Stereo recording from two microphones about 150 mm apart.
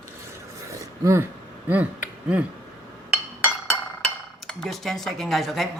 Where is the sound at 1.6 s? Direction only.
10° right (ahead or behind).